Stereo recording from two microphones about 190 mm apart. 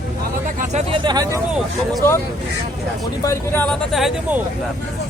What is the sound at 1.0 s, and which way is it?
Speech, 20° right (ahead or behind).